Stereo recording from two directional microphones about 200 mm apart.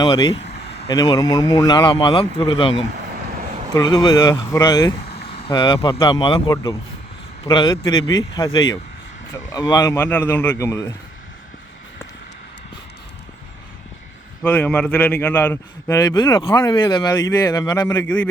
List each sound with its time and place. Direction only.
0.0 s speech: 20° left (ahead or behind)
3.1 s a sound: 45° right (ahead or behind)
3.8 s a man's voice: 20° left (ahead or behind)
14.4 s a man's voice: 10° left (ahead or behind)